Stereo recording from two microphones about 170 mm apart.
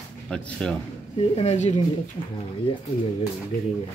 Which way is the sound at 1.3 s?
40° left (ahead or behind).